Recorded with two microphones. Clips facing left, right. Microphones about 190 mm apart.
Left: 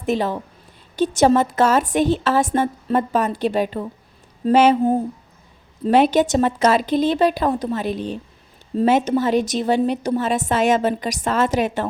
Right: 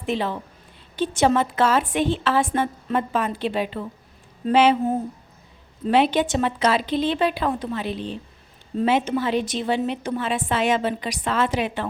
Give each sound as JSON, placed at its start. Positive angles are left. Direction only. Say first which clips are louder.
{"t": 0.0, "sound": "a woman's voice", "louder": "left 4 dB", "side_deg": 40}